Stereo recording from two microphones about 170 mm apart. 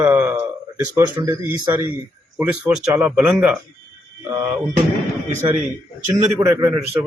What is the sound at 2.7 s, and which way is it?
Speech, centre (ahead or behind).